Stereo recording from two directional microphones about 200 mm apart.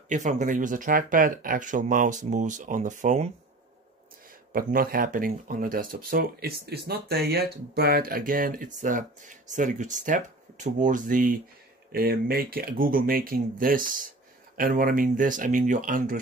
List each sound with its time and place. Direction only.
0.1 s speech: 35° right (ahead or behind)
4.5 s speech: 45° right (ahead or behind)